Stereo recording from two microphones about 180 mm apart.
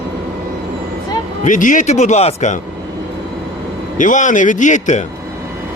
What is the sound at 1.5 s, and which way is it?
Speech, 45° left (ahead or behind).